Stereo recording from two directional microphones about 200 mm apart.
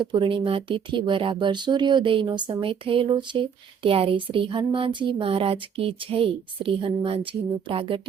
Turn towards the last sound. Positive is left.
turn(degrees=-25)  # may be behind; listen again after turning